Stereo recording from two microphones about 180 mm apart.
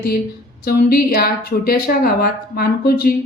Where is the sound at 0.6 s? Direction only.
55° left (ahead or behind).